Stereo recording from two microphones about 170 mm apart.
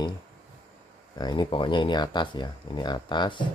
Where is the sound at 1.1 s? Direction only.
25° left (ahead or behind).